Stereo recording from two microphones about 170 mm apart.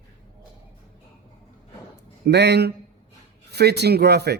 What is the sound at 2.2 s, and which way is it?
Speech, 75° right (ahead or behind).